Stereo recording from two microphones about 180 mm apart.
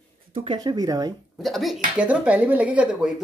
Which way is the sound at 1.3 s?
Centre (ahead or behind).